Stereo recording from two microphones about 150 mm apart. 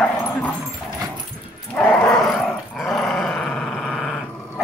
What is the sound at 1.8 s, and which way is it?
Dog, 10° left (ahead or behind).